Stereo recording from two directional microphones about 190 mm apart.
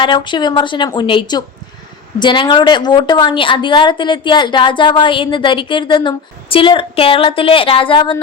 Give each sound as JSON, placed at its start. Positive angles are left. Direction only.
{"t": 0.0, "sound": "speech", "side_deg": 25}